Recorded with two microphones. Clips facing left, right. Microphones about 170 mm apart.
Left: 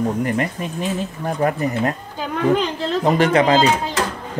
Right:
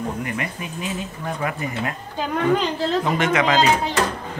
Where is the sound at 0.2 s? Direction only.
40° left (ahead or behind).